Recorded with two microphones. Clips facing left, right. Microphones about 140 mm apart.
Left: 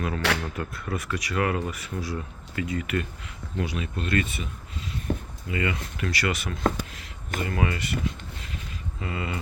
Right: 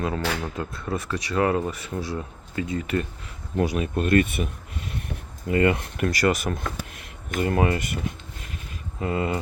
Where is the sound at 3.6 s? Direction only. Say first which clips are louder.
Right 7 dB; 45° right (ahead or behind).